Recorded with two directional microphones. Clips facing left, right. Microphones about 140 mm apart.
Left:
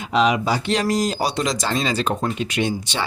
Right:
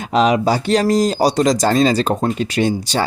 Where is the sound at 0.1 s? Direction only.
40° right (ahead or behind).